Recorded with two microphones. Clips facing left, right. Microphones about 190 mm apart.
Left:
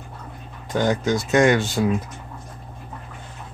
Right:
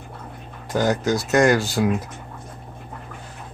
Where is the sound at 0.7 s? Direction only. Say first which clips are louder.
Even; 5° right (ahead or behind).